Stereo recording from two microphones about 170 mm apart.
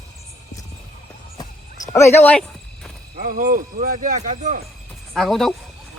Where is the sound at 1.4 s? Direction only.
20° left (ahead or behind).